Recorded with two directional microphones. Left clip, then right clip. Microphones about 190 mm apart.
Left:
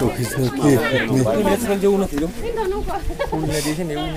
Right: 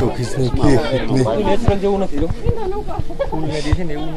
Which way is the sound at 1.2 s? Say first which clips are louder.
Right 1 dB; 65° left (ahead or behind).